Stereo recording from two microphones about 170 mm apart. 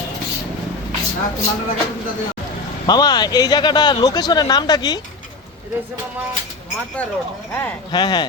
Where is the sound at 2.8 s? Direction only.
25° left (ahead or behind).